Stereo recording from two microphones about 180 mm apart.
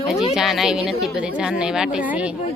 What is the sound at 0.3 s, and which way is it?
A woman's voice, centre (ahead or behind).